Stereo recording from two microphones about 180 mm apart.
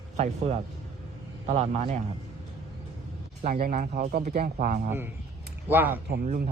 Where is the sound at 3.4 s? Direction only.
55° right (ahead or behind).